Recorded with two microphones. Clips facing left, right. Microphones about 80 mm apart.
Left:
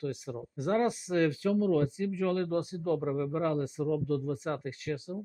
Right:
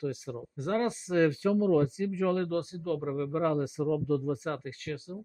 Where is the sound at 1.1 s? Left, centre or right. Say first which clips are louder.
Right 3 dB; right.